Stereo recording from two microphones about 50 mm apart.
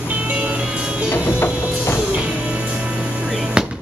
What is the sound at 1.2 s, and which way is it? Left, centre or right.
Music, left.